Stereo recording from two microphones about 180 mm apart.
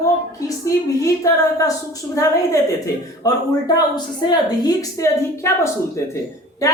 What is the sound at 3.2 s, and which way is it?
Speech, 20° left (ahead or behind).